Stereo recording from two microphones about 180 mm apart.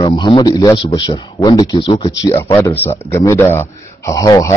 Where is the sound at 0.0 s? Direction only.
25° left (ahead or behind).